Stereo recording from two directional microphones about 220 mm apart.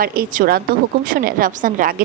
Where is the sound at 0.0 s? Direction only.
40° right (ahead or behind).